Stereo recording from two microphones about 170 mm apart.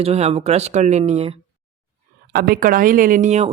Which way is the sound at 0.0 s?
35° right (ahead or behind).